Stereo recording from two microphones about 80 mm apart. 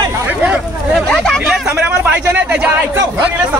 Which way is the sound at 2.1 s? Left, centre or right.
Centre.